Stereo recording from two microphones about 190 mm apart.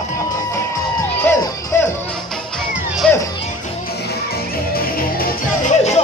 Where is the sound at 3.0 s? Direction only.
5° left (ahead or behind).